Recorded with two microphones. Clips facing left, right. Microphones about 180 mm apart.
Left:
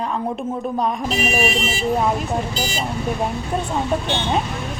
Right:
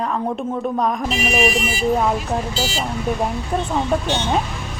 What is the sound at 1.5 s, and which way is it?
Speech, 25° left (ahead or behind).